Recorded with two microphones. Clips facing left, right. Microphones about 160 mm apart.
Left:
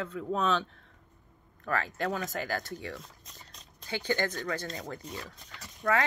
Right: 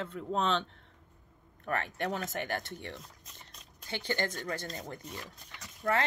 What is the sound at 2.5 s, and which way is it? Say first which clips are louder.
Speech: left 2 dB; 25° right (ahead or behind).